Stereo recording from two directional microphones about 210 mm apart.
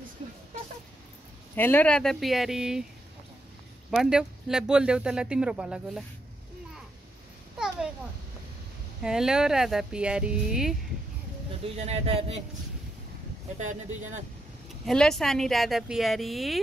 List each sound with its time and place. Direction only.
1.5 s speech: 10° left (ahead or behind)
3.9 s speech: centre (ahead or behind)
7.5 s a sound: 5° right (ahead or behind)
9.0 s speech: 5° right (ahead or behind)
11.6 s speech: 30° right (ahead or behind)
13.6 s speech: 35° right (ahead or behind)
14.9 s speech: centre (ahead or behind)